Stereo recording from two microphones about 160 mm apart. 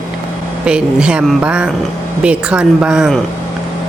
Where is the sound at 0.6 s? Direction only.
5° right (ahead or behind).